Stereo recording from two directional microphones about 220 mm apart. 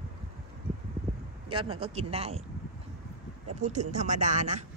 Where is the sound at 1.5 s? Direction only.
25° right (ahead or behind).